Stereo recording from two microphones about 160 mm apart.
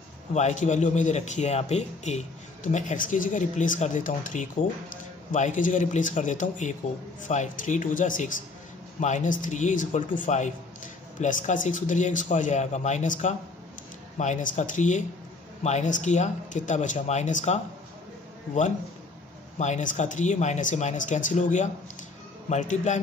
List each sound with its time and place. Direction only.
0.3 s a man's voice: 45° left (ahead or behind)
19.6 s a man's voice: 50° left (ahead or behind)